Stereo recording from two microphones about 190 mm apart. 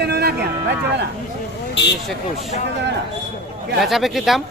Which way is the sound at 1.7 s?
65° left (ahead or behind).